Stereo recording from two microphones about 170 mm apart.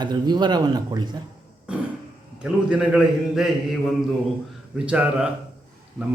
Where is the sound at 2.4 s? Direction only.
5° right (ahead or behind).